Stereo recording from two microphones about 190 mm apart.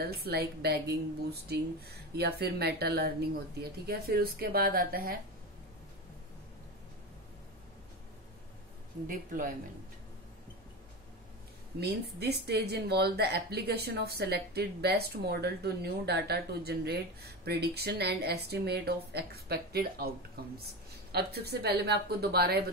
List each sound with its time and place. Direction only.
0.0 s speech: 55° right (ahead or behind)
9.0 s speech: 45° right (ahead or behind)
11.8 s speech: 60° right (ahead or behind)